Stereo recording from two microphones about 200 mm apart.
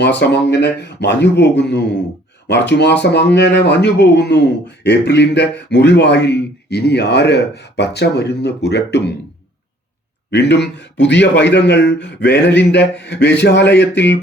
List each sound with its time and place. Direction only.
0.0 s speech: 60° left (ahead or behind)
10.3 s speech: 60° left (ahead or behind)